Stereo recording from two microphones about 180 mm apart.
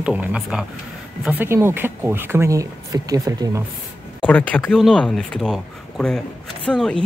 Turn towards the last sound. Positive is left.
turn(degrees=5)  # may be behind; listen again after turning